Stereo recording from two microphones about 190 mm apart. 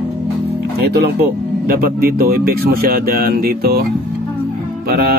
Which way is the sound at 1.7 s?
50° right (ahead or behind).